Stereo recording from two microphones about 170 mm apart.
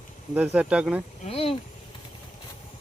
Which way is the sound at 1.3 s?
35° left (ahead or behind).